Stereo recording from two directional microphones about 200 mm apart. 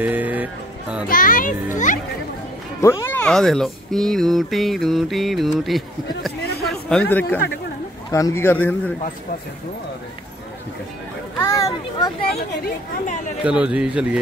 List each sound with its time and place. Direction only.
0.0 s music: 10° right (ahead or behind)
1.0 s a child's voice: 45° left (ahead or behind)
2.8 s a man's voice: 15° left (ahead or behind)
11.3 s a man's voice: 15° left (ahead or behind)
13.4 s speech: 5° right (ahead or behind)